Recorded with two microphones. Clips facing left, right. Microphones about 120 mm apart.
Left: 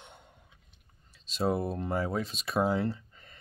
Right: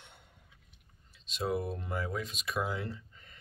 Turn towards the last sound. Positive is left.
turn(degrees=35)  # may be behind; listen again after turning